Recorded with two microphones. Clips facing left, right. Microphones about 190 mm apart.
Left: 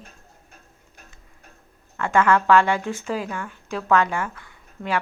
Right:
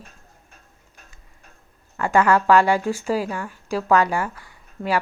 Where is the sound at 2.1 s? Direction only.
35° right (ahead or behind).